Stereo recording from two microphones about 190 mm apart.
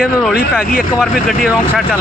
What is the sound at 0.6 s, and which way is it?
Speech, 50° left (ahead or behind).